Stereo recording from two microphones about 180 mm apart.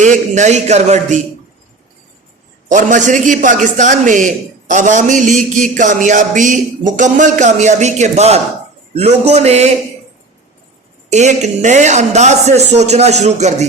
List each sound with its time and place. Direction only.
0.0 s a man's voice: 40° right (ahead or behind)
2.6 s a man's voice: 45° right (ahead or behind)
11.1 s a man's voice: 40° right (ahead or behind)